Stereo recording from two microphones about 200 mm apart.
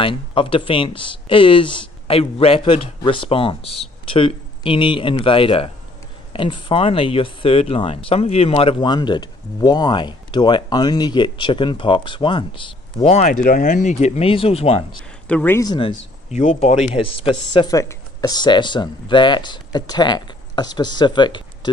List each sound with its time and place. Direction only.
0.0 s speech: 25° left (ahead or behind)
15.2 s speech: 10° left (ahead or behind)
16.3 s speech: 30° left (ahead or behind)